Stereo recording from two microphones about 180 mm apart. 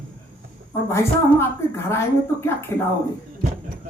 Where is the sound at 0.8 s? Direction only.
15° left (ahead or behind).